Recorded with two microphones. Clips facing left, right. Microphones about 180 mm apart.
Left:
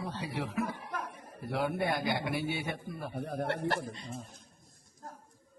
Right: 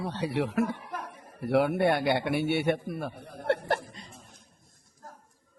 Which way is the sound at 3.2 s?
65° left (ahead or behind).